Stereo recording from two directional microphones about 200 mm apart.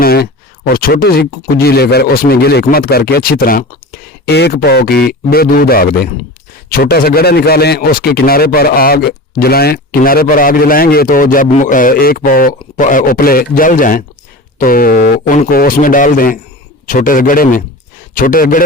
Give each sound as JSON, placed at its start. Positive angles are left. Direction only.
{"t": 0.0, "sound": "a man's voice", "side_deg": 50}